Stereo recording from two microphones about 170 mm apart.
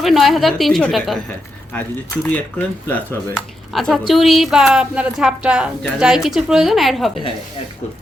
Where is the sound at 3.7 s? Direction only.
Centre (ahead or behind).